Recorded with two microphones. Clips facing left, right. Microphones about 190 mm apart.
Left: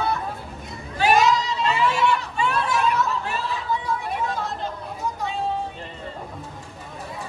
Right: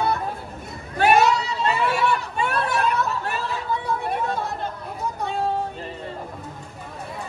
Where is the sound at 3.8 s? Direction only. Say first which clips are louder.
Right 1 dB; 55° right (ahead or behind).